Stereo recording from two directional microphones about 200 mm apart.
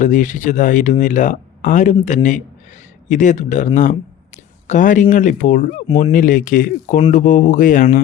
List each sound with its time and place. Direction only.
0.0 s speech: 40° left (ahead or behind)
4.7 s speech: 40° left (ahead or behind)